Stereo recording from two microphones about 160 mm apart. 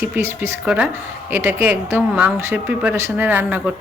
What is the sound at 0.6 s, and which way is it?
Speech, 5° right (ahead or behind).